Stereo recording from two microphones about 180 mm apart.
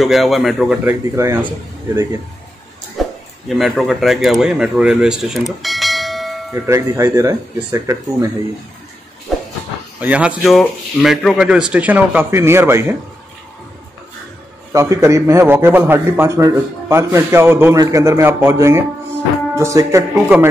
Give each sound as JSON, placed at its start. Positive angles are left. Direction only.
{"t": 0.0, "sound": "speech", "side_deg": 0}
{"t": 0.8, "sound": "a man's voice", "side_deg": -15}
{"t": 3.0, "sound": "speech", "side_deg": 0}
{"t": 6.5, "sound": "a man's voice", "side_deg": -15}
{"t": 9.3, "sound": "a sound", "side_deg": 0}
{"t": 9.9, "sound": "a man's voice", "side_deg": -5}
{"t": 14.7, "sound": "a man's voice", "side_deg": -15}